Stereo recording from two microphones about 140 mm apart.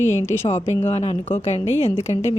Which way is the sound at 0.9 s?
45° left (ahead or behind).